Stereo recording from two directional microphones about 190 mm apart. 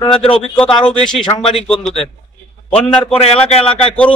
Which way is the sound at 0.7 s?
5° left (ahead or behind).